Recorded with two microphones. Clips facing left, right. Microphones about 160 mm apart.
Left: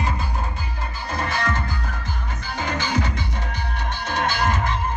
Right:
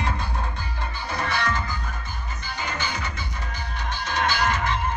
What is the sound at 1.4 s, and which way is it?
Music, 55° left (ahead or behind).